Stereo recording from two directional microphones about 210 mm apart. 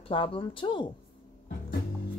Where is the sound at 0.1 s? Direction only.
25° left (ahead or behind).